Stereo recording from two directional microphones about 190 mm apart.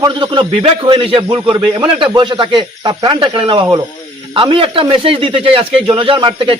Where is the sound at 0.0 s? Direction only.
25° right (ahead or behind).